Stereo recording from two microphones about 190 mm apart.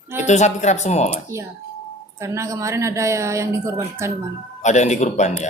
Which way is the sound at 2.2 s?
15° right (ahead or behind).